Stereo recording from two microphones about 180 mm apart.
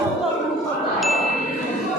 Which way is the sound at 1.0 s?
Centre (ahead or behind).